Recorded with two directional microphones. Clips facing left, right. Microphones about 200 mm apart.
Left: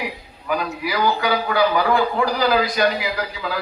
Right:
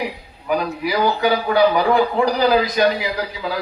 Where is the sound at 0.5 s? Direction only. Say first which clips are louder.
Right 3 dB; 25° right (ahead or behind).